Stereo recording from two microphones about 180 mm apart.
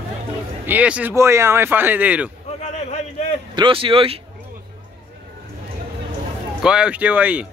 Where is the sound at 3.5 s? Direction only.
30° right (ahead or behind).